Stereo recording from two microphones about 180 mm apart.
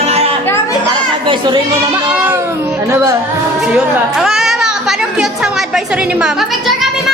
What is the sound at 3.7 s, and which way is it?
Music, centre (ahead or behind).